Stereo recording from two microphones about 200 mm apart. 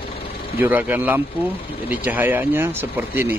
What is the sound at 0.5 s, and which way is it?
Speech, 10° right (ahead or behind).